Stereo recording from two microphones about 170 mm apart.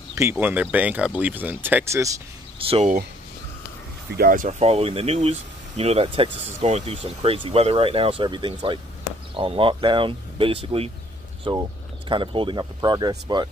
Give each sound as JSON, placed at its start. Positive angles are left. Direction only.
{"t": 0.1, "sound": "speech", "side_deg": -15}
{"t": 2.7, "sound": "speech", "side_deg": -40}
{"t": 4.2, "sound": "speech", "side_deg": -50}